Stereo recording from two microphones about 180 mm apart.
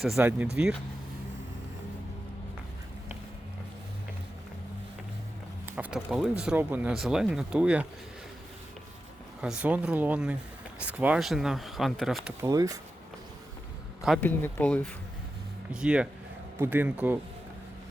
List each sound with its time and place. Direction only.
0.0 s speech: 5° right (ahead or behind)
5.6 s speech: 10° right (ahead or behind)
9.4 s speech: 5° right (ahead or behind)
12.4 s speech: 20° right (ahead or behind)
14.2 s speech: 10° left (ahead or behind)
15.7 s speech: 5° right (ahead or behind)